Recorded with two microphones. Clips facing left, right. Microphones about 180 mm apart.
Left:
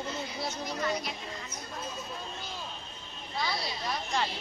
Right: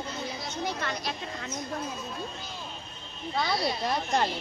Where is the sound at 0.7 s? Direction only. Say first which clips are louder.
Even; 75° right (ahead or behind).